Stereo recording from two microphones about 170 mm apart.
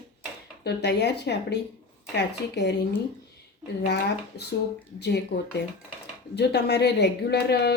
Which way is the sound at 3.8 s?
75° left (ahead or behind).